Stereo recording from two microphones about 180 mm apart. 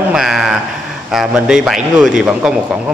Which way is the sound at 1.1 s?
5° right (ahead or behind).